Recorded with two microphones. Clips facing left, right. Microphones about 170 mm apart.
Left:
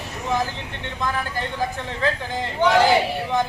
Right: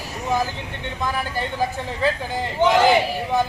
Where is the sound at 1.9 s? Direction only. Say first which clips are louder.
Right 2 dB; 15° right (ahead or behind).